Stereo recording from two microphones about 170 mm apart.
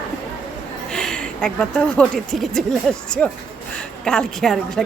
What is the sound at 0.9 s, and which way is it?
A woman's voice, 5° left (ahead or behind).